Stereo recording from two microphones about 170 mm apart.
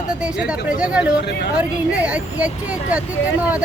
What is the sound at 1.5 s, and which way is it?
Speech, 5° right (ahead or behind).